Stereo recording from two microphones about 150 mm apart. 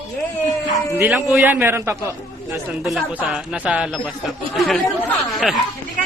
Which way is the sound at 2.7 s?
Centre (ahead or behind).